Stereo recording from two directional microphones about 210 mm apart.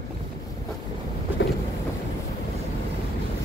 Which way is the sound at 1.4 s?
60° left (ahead or behind).